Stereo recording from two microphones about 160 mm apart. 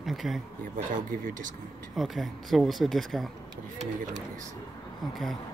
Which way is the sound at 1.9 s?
Centre (ahead or behind).